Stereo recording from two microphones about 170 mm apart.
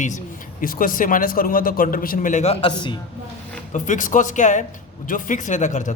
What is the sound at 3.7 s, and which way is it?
Speech, 50° left (ahead or behind).